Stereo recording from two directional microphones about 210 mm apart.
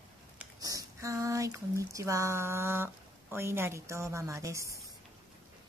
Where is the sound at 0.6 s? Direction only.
15° right (ahead or behind).